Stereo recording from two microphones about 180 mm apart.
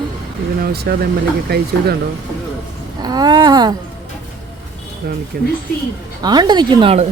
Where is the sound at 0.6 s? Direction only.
60° right (ahead or behind).